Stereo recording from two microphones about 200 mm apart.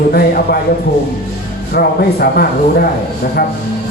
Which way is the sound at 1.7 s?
50° left (ahead or behind).